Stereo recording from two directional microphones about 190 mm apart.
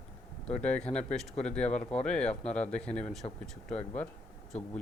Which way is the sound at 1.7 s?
35° left (ahead or behind).